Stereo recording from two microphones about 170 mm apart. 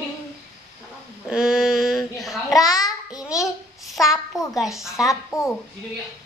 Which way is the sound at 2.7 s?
20° left (ahead or behind).